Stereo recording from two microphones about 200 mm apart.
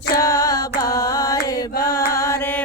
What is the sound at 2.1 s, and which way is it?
Music, 15° left (ahead or behind).